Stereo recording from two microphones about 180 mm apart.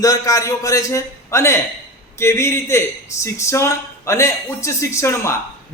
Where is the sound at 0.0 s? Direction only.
20° left (ahead or behind).